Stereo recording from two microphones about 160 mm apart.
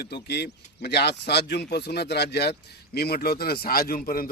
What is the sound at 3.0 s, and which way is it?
Speech, 75° left (ahead or behind).